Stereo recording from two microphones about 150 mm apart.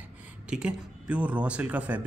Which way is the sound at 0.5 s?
5° right (ahead or behind).